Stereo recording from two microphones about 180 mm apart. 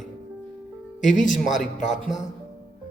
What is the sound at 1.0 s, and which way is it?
Speech, 45° left (ahead or behind).